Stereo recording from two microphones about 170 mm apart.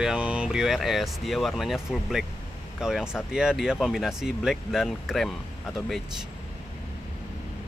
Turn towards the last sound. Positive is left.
turn(degrees=0)  # may be behind; listen again after turning